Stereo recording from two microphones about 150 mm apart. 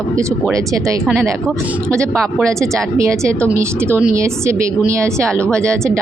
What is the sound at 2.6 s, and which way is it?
A woman's voice, 20° right (ahead or behind).